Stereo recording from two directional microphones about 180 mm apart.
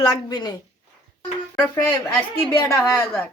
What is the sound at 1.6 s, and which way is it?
A woman's voice, 10° left (ahead or behind).